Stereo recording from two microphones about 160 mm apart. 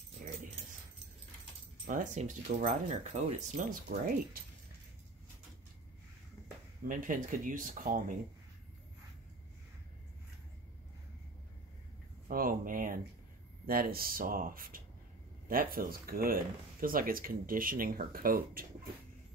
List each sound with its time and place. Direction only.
1.9 s speech: 55° right (ahead or behind)
6.9 s speech: 55° right (ahead or behind)
12.3 s speech: 65° right (ahead or behind)